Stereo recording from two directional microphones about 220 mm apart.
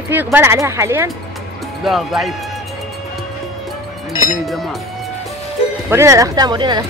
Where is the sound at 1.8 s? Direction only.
Centre (ahead or behind).